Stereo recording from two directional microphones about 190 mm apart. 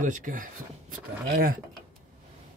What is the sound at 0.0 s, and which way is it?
Speech, 45° right (ahead or behind).